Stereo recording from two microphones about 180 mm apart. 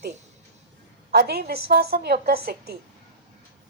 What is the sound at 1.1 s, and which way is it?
A woman's voice, 60° right (ahead or behind).